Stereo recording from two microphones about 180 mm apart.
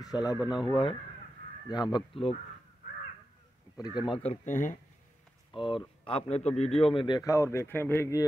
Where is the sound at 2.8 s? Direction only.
55° left (ahead or behind).